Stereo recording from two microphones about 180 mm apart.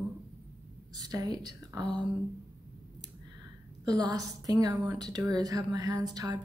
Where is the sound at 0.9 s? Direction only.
20° right (ahead or behind).